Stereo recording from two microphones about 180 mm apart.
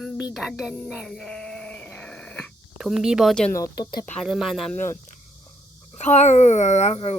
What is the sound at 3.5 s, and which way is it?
Speech, 20° left (ahead or behind).